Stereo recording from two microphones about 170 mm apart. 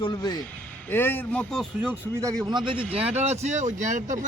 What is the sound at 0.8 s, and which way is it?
Speech, 10° left (ahead or behind).